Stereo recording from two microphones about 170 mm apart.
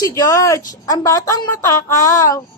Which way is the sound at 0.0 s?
20° left (ahead or behind).